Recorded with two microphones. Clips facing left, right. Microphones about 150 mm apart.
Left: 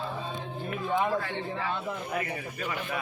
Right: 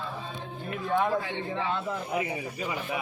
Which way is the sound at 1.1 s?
15° right (ahead or behind).